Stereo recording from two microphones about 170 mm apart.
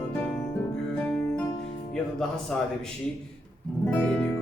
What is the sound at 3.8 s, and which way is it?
Music, 5° left (ahead or behind).